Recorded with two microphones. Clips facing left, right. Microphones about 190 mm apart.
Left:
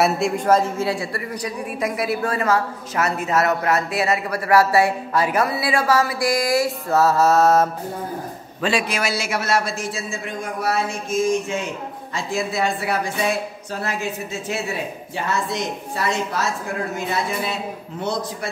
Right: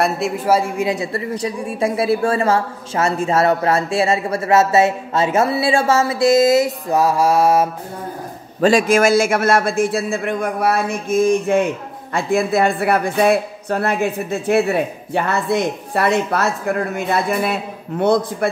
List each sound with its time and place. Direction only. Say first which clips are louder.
0.0 s a man's voice: even; 5° right (ahead or behind)
8.5 s a man's voice: right 9 dB; 45° right (ahead or behind)